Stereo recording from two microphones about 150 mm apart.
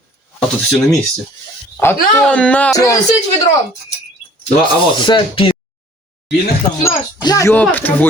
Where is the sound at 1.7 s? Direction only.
10° left (ahead or behind).